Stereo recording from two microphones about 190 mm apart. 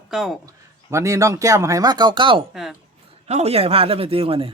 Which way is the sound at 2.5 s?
Centre (ahead or behind).